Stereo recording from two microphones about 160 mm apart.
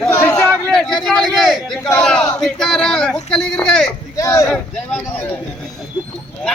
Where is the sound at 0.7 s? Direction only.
Centre (ahead or behind).